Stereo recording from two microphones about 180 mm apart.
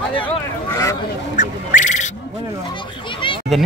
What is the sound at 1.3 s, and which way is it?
Speech, 45° left (ahead or behind).